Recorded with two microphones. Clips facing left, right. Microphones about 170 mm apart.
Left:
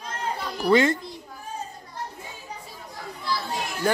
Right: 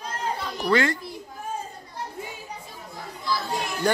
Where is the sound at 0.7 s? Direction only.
20° left (ahead or behind).